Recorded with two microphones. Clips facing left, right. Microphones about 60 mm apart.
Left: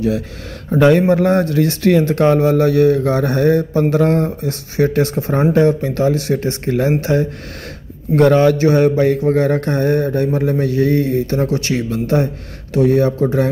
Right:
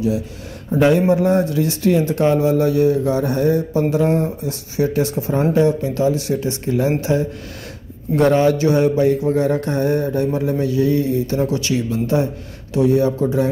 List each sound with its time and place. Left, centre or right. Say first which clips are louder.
0.7 s speech: left 3 dB; left
3.9 s mantra: left 3 dB; left